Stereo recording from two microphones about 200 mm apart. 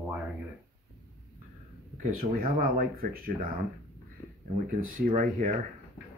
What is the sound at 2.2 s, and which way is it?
Speech, 45° right (ahead or behind).